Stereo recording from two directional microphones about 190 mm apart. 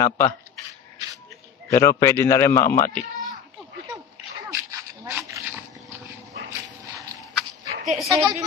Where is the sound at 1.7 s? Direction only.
15° left (ahead or behind).